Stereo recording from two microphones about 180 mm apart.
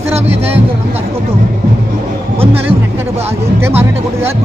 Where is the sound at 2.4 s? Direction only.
30° right (ahead or behind).